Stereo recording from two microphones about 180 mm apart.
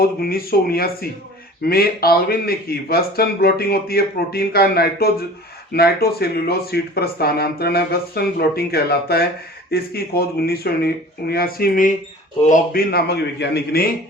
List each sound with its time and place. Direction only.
0.0 s speech: 55° left (ahead or behind)
12.9 s speech: 65° left (ahead or behind)